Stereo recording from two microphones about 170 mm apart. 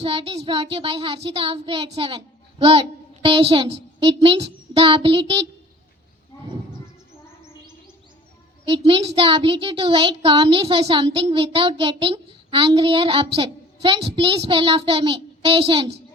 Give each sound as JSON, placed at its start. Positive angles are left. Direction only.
{"t": 0.0, "sound": "speech", "side_deg": -35}
{"t": 8.7, "sound": "speech", "side_deg": -35}